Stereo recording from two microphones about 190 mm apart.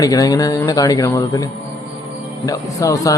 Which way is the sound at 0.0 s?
20° left (ahead or behind).